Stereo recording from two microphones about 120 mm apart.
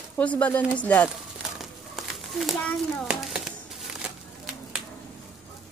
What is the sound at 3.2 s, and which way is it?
Crumpling, 5° right (ahead or behind).